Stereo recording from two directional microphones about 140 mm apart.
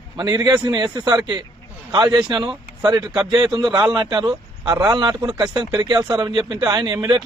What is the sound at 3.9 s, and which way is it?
Speech, 35° right (ahead or behind).